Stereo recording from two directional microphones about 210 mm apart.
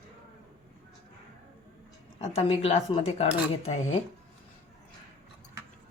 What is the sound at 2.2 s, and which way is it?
Speech, 30° left (ahead or behind).